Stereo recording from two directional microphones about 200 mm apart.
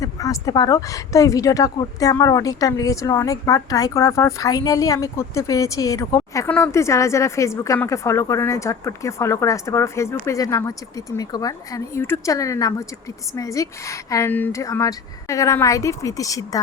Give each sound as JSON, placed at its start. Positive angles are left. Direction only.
{"t": 0.0, "sound": "speech", "side_deg": 15}